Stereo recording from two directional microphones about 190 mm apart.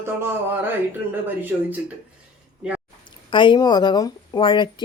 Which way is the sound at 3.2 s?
25° left (ahead or behind).